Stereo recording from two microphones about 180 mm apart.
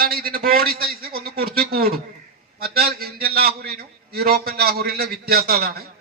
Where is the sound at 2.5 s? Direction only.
60° right (ahead or behind).